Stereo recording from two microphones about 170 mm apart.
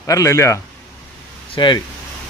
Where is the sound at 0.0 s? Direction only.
20° left (ahead or behind).